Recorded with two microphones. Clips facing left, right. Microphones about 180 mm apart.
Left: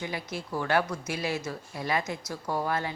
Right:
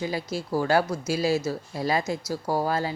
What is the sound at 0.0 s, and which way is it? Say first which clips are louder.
A woman's voice: right 6 dB; 35° right (ahead or behind).